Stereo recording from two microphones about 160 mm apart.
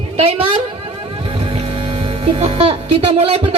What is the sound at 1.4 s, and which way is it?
Speech, 35° right (ahead or behind).